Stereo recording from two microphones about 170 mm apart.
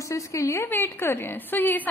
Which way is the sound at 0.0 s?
20° left (ahead or behind).